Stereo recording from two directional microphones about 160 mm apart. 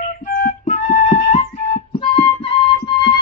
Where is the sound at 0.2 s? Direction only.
55° left (ahead or behind).